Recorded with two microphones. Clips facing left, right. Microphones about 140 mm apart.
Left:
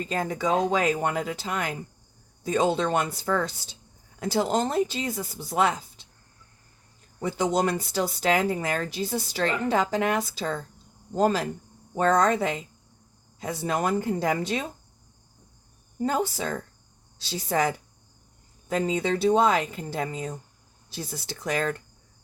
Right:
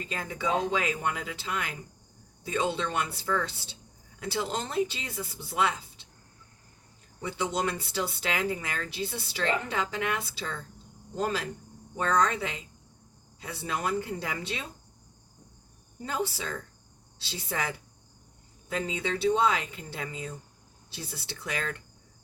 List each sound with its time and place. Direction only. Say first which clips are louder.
0.0 s speech: left 6 dB; 40° left (ahead or behind)
7.2 s speech: left 6 dB; 40° left (ahead or behind)
16.0 s speech: left 6 dB; 45° left (ahead or behind)